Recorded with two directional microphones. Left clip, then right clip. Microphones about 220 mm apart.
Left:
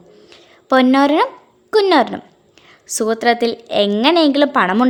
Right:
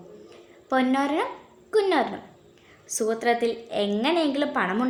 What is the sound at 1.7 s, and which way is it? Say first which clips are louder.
A woman's voice: left 9 dB; 50° left (ahead or behind).